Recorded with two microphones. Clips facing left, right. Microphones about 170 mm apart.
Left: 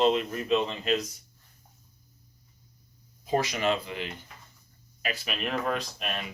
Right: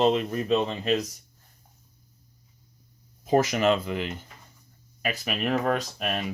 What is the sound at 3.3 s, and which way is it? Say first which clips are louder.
Speech: right 5 dB; 45° right (ahead or behind).